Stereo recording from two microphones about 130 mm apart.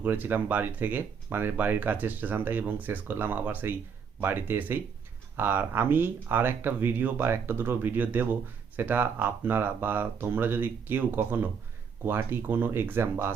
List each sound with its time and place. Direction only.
0.0 s speech: 15° right (ahead or behind)